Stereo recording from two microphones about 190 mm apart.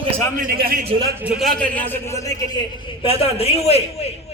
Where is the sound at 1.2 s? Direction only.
5° right (ahead or behind).